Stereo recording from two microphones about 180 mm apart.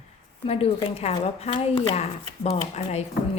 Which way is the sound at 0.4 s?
35° left (ahead or behind).